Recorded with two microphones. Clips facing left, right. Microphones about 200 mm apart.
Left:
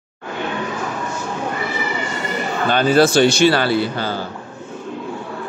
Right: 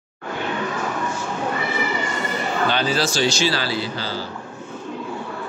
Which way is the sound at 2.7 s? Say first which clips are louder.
Left 13 dB; 55° left (ahead or behind).